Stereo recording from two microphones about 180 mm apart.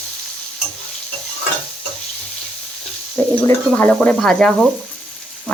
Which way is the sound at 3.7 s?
10° left (ahead or behind).